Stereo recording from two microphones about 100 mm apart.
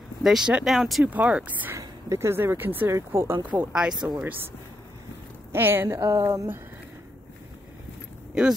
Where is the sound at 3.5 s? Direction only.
10° right (ahead or behind).